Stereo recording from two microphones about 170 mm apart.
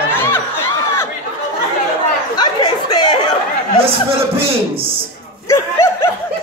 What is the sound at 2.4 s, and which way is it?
Chatter, 25° left (ahead or behind).